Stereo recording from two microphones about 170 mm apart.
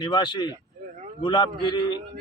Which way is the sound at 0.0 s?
25° left (ahead or behind).